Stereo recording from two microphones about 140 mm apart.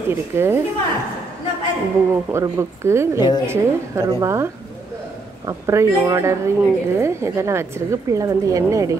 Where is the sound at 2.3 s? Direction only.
20° right (ahead or behind).